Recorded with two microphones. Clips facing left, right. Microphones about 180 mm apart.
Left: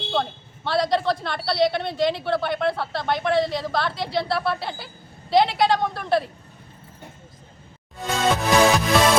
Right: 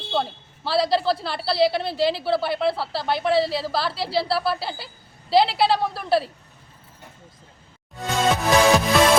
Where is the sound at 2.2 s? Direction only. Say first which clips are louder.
Right 1 dB; 5° right (ahead or behind).